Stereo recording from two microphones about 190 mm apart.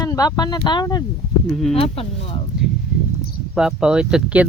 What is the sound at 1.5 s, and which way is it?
Speech, centre (ahead or behind).